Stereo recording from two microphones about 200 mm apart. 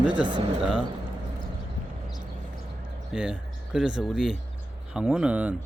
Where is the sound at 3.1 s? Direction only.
5° right (ahead or behind).